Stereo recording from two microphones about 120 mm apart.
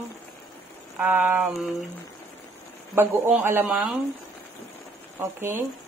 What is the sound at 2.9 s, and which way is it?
Speech, 20° right (ahead or behind).